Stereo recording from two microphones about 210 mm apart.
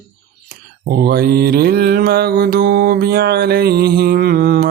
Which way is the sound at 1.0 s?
50° right (ahead or behind).